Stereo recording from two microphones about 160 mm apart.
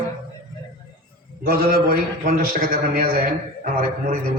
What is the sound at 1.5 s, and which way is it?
A man's voice, 70° right (ahead or behind).